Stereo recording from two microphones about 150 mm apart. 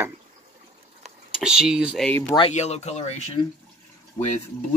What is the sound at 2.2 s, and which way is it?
Speech, 30° left (ahead or behind).